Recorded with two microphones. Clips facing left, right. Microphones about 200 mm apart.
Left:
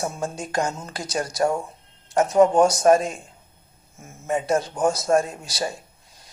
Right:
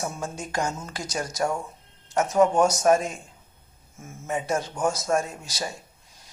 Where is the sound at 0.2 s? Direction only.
35° left (ahead or behind).